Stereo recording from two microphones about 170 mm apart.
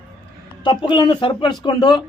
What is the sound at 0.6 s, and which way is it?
Speech, 25° left (ahead or behind).